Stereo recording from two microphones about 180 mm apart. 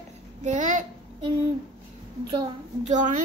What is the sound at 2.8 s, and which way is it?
Speech, 45° right (ahead or behind).